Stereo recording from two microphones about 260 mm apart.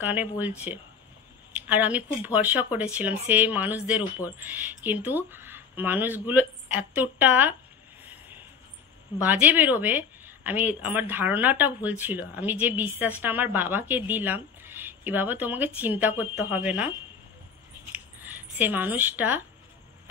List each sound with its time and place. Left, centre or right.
0.0 s a woman's voice: centre
8.0 s vehicle: centre
9.2 s a woman's voice: centre
17.9 s squish: centre